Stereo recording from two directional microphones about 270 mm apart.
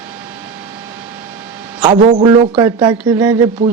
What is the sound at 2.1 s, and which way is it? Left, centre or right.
Speech, centre.